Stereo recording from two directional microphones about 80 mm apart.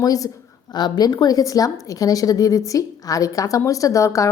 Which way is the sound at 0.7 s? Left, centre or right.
Left.